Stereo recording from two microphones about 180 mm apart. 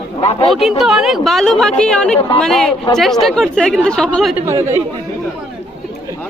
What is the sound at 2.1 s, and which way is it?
Speech, 30° left (ahead or behind).